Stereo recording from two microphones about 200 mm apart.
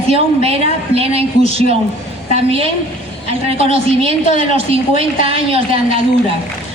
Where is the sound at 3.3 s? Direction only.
30° right (ahead or behind).